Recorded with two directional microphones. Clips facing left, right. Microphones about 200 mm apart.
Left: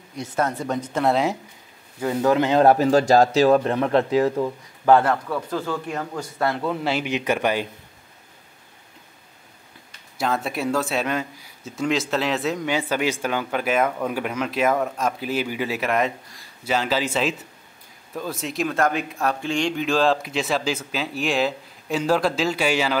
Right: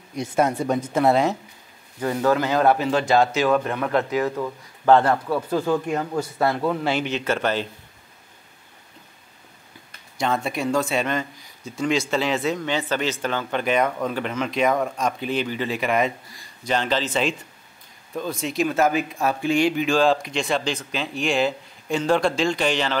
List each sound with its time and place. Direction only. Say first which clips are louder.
0.2 s speech: right 3 dB; 15° right (ahead or behind)
2.0 s speech: left 1 dB; 10° left (ahead or behind)
2.3 s speech: left 3 dB; 20° left (ahead or behind)
2.6 s speech: left 4 dB; 40° left (ahead or behind)
4.8 s speech: even; 10° left (ahead or behind)
5.5 s speech: right 8 dB; 15° right (ahead or behind); by 7.1 s 5° left (ahead or behind)
7.1 s speech: left 1 dB; 15° left (ahead or behind)
10.1 s speech: right 1 dB; centre (ahead or behind)